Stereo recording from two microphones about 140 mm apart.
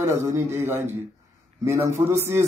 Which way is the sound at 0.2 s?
20° right (ahead or behind).